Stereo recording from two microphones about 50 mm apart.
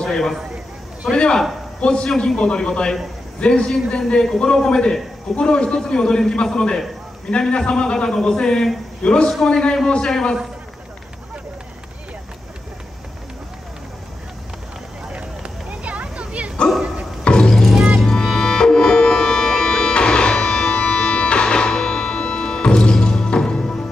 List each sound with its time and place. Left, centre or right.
0.0 s a man's voice: centre
15.1 s dog: right
17.2 s music: centre